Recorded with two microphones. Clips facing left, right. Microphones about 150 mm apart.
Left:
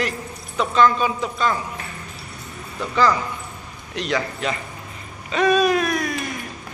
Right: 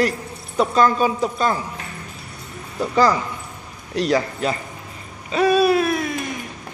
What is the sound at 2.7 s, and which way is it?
Speech, 35° right (ahead or behind).